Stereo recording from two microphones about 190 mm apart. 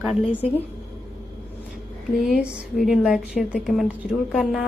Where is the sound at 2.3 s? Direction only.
5° right (ahead or behind).